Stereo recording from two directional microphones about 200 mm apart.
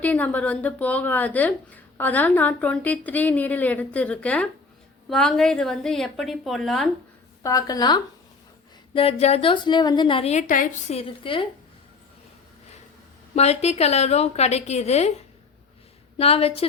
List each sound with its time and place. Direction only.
0.0 s a woman's voice: 10° left (ahead or behind)
7.4 s a woman's voice: 15° left (ahead or behind)
13.3 s a woman's voice: 30° left (ahead or behind)
16.1 s a woman's voice: 30° left (ahead or behind)